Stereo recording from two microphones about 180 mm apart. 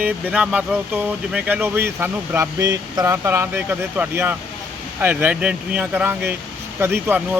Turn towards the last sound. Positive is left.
turn(degrees=-10)  # may be behind; listen again after turning